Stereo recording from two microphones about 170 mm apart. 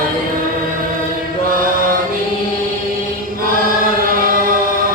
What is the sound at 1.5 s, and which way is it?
Chant, 55° right (ahead or behind).